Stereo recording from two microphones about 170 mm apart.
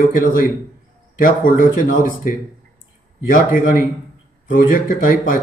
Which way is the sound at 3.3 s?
55° left (ahead or behind).